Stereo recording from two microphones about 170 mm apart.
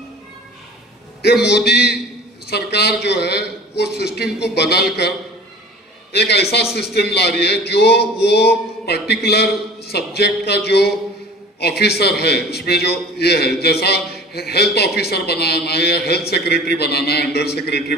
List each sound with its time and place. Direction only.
1.2 s a man's voice: 75° left (ahead or behind)
6.1 s a man's voice: 75° left (ahead or behind)